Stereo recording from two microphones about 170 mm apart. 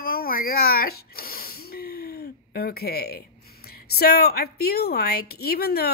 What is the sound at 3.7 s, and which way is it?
A woman's voice, 65° left (ahead or behind).